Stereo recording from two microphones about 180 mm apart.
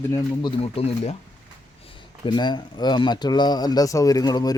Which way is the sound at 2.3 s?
25° left (ahead or behind).